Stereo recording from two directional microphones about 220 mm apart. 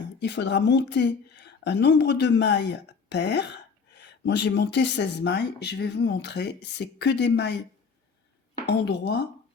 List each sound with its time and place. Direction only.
0.2 s speech: 50° left (ahead or behind)
8.6 s speech: 50° left (ahead or behind)